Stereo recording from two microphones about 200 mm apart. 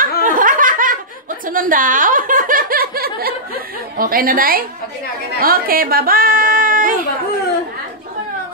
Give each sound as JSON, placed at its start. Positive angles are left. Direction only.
{"t": 0.2, "sound": "laughter", "side_deg": -40}
{"t": 1.5, "sound": "chuckle", "side_deg": -45}
{"t": 4.0, "sound": "a woman's voice", "side_deg": -45}
{"t": 5.4, "sound": "a sound", "side_deg": -45}